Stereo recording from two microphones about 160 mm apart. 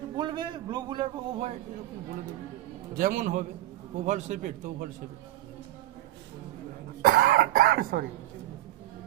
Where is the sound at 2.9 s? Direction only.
60° right (ahead or behind).